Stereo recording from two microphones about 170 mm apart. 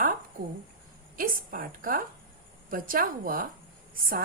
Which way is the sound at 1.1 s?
55° right (ahead or behind).